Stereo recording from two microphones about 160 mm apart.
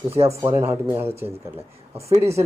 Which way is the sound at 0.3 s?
15° right (ahead or behind).